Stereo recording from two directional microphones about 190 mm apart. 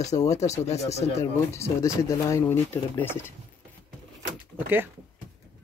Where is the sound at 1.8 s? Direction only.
15° left (ahead or behind).